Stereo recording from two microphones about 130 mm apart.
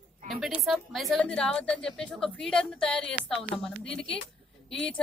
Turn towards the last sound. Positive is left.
turn(degrees=45)  # may be behind; listen again after turning